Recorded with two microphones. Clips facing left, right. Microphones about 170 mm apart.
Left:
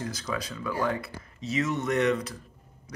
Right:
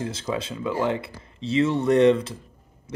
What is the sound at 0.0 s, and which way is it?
Speech, 25° right (ahead or behind).